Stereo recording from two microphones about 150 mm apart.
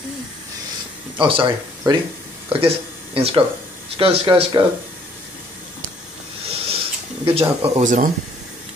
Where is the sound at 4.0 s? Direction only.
40° right (ahead or behind).